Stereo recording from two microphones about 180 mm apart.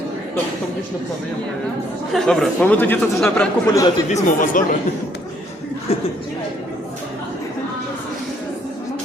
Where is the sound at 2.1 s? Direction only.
Centre (ahead or behind).